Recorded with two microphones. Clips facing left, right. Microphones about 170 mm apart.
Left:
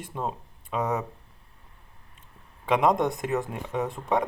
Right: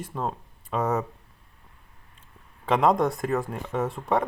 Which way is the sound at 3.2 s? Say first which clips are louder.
Right 1 dB; centre (ahead or behind).